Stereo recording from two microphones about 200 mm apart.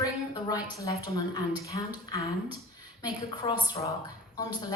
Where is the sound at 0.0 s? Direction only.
20° left (ahead or behind).